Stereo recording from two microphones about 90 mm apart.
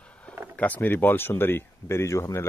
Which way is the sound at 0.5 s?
20° left (ahead or behind).